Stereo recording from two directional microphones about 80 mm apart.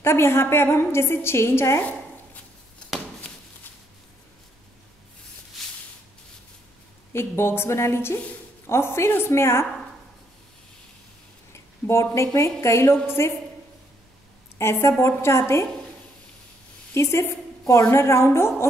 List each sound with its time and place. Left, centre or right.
0.0 s a woman's voice: left
7.1 s a woman's voice: left
11.5 s a sound: left
12.4 s a woman's voice: left
14.6 s a woman's voice: left
16.9 s a woman's voice: left